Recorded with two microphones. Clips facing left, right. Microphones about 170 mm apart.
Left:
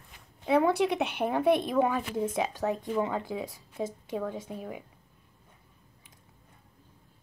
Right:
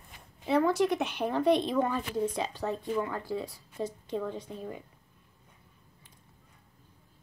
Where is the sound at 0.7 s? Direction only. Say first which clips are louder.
Even; 65° left (ahead or behind).